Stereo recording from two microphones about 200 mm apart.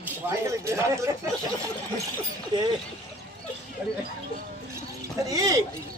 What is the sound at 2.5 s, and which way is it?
Speech, 20° right (ahead or behind).